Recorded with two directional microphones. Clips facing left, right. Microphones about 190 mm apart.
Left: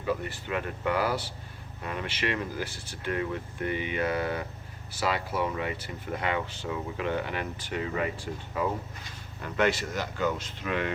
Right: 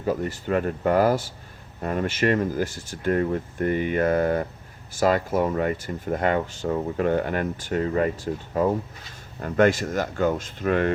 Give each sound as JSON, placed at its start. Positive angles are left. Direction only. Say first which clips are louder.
{"t": 0.0, "sound": "speech", "louder": "right 5 dB", "side_deg": -40}